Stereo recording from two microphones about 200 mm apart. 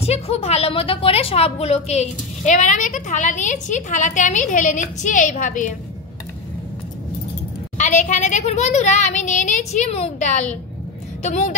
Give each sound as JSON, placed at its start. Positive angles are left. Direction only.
{"t": 0.0, "sound": "a woman's voice", "side_deg": 30}
{"t": 7.7, "sound": "a woman's voice", "side_deg": 40}